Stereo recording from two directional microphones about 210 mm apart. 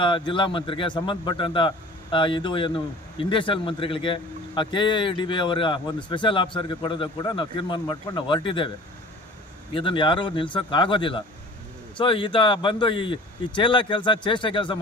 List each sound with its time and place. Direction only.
0.0 s a man's voice: 25° left (ahead or behind)
9.7 s a man's voice: 25° left (ahead or behind)